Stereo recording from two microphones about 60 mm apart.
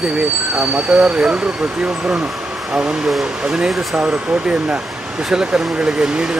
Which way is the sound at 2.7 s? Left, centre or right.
Centre.